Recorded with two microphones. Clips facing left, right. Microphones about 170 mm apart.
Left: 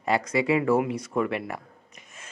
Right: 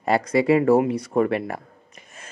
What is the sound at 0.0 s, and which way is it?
Speech, 35° right (ahead or behind).